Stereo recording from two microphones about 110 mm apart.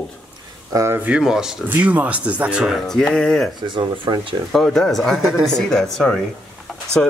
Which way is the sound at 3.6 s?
45° right (ahead or behind).